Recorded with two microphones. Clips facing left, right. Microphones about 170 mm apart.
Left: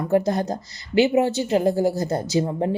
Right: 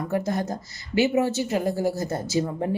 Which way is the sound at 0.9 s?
15° left (ahead or behind).